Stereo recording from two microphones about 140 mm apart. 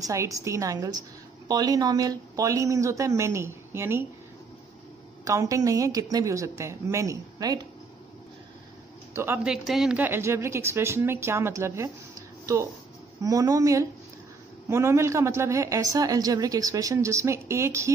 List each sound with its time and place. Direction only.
0.0 s speech: 25° right (ahead or behind)
5.2 s speech: 25° right (ahead or behind)
9.1 s speech: 15° right (ahead or behind)
13.2 s speech: 25° right (ahead or behind)